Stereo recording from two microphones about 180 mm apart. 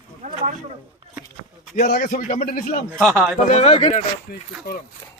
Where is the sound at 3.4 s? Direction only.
40° left (ahead or behind).